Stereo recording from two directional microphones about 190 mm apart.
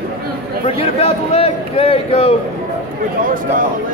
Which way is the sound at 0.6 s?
30° left (ahead or behind).